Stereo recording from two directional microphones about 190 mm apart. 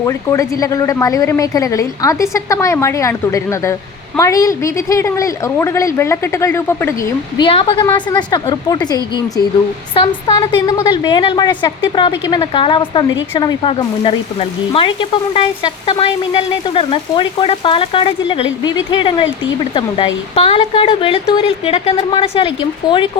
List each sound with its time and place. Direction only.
0.0 s a woman's voice: 15° left (ahead or behind)
7.4 s frying: 25° left (ahead or behind)
20.3 s frying: 30° left (ahead or behind)